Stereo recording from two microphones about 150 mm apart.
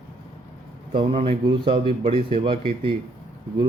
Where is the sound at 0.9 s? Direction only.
35° right (ahead or behind).